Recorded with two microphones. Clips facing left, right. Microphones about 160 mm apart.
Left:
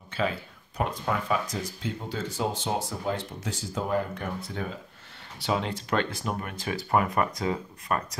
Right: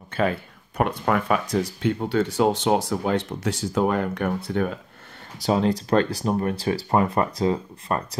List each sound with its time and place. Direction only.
0.1 s speech: 55° right (ahead or behind)
5.4 s speech: 40° right (ahead or behind)